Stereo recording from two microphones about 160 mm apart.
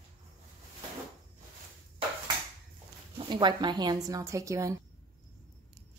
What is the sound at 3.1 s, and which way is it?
A woman's voice, 30° right (ahead or behind).